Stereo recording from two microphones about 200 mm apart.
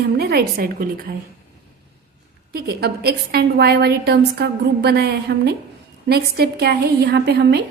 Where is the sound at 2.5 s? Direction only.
50° right (ahead or behind).